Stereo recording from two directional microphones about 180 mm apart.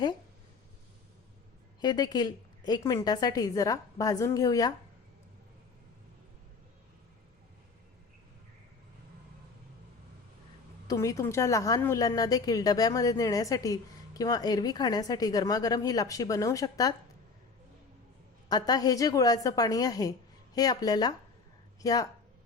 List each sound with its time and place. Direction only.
1.8 s a woman's voice: 20° left (ahead or behind)
10.8 s a woman's voice: 20° left (ahead or behind)
18.4 s a woman's voice: 20° left (ahead or behind)